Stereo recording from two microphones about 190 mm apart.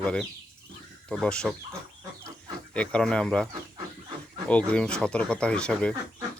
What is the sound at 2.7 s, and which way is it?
Speech, 5° left (ahead or behind).